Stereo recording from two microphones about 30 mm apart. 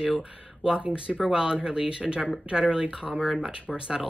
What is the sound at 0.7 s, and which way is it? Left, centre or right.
Speech, right.